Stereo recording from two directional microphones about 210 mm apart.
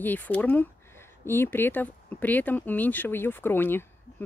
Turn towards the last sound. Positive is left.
turn(degrees=10)  # may be behind; listen again after turning